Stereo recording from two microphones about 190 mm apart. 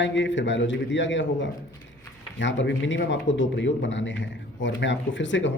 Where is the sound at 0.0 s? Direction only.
75° left (ahead or behind).